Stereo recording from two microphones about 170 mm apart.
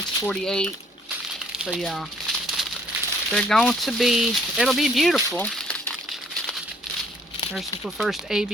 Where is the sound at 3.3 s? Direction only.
5° left (ahead or behind).